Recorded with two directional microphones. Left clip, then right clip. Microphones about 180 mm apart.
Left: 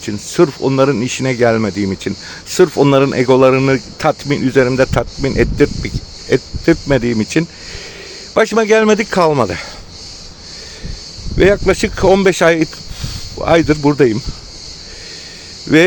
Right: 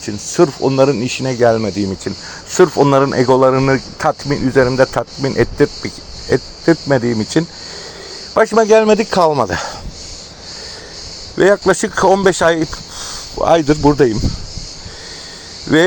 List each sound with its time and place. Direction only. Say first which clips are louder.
0.0 s speech: even; 25° left (ahead or behind)
3.2 s speech: left 2 dB; 15° left (ahead or behind)
3.5 s speech: left 1 dB; 30° left (ahead or behind)
8.3 s a man's voice: right 1 dB; 25° left (ahead or behind); by 9.6 s 5° left (ahead or behind)
11.3 s speech: even; 15° left (ahead or behind)
11.7 s speech: even; 5° left (ahead or behind)